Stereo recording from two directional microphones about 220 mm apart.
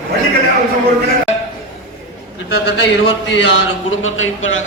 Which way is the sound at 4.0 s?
65° left (ahead or behind).